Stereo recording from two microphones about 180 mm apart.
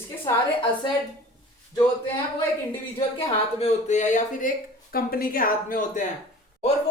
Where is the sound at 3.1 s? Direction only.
35° left (ahead or behind); by 6.0 s 50° left (ahead or behind).